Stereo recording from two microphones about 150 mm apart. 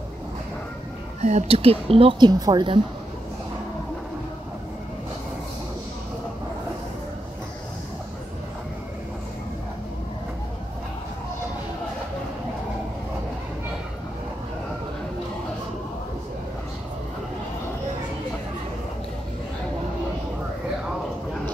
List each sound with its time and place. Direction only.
1.2 s speech: 50° right (ahead or behind); by 2.8 s 30° right (ahead or behind)